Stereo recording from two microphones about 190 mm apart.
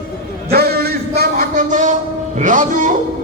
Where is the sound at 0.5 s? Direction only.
55° right (ahead or behind).